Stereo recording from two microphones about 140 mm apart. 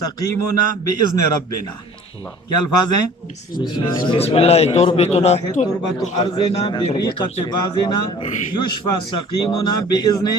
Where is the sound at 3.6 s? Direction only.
35° left (ahead or behind); by 5.7 s 50° left (ahead or behind).